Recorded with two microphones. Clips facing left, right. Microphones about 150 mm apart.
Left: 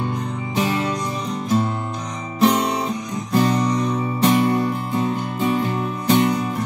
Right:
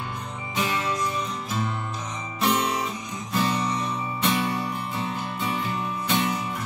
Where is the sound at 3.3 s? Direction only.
40° left (ahead or behind).